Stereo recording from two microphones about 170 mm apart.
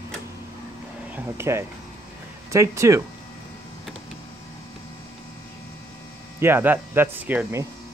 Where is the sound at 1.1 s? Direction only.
10° right (ahead or behind).